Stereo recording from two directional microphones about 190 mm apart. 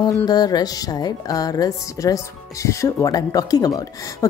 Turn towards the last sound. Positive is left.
turn(degrees=20)  # may be behind; listen again after turning